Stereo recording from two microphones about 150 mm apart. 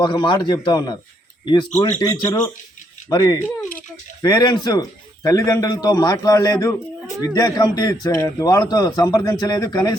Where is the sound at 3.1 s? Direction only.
25° left (ahead or behind).